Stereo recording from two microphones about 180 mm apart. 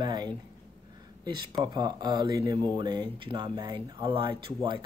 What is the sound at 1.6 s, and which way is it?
Speech, 25° right (ahead or behind).